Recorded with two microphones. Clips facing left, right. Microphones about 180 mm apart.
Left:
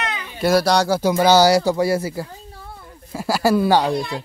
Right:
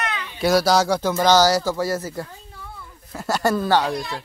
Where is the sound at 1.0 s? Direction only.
10° left (ahead or behind).